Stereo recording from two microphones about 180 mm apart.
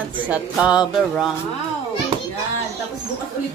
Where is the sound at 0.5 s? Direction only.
5° right (ahead or behind).